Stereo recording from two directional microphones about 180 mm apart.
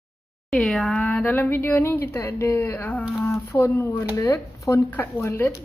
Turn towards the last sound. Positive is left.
turn(degrees=15)  # may be behind; listen again after turning